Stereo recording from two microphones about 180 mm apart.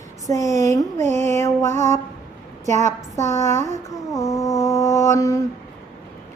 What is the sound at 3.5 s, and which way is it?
Mantra, 40° right (ahead or behind).